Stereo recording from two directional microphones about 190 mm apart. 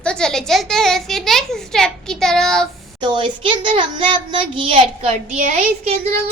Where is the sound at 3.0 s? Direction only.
25° right (ahead or behind).